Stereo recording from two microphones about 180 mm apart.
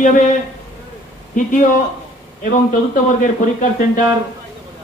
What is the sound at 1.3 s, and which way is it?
Speech, 45° left (ahead or behind).